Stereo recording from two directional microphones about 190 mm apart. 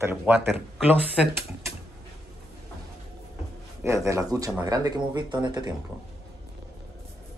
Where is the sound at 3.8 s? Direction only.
15° right (ahead or behind).